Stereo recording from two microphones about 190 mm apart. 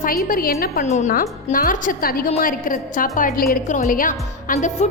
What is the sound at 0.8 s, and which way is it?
A woman's voice, 40° left (ahead or behind).